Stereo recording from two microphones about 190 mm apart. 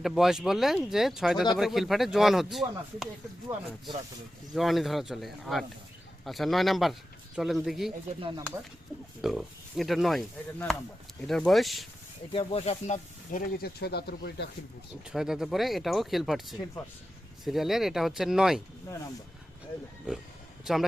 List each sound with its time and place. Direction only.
0.0 s speech: centre (ahead or behind)
4.5 s speech: centre (ahead or behind)
8.2 s speech: 25° right (ahead or behind)
9.2 s speech: centre (ahead or behind)
12.3 s speech: 30° left (ahead or behind)
13.6 s speech: 55° left (ahead or behind)
15.1 s speech: centre (ahead or behind)